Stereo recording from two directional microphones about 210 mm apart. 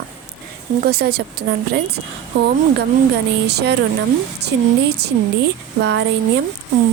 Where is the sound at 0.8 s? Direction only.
50° right (ahead or behind).